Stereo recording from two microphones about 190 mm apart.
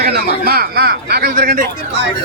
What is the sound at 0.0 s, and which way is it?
Speech, 55° right (ahead or behind).